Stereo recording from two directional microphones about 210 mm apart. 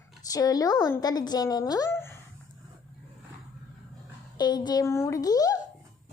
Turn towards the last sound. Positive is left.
turn(degrees=15)  # may be behind; listen again after turning